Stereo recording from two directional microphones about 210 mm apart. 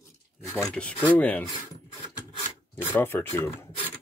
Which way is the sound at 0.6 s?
10° left (ahead or behind).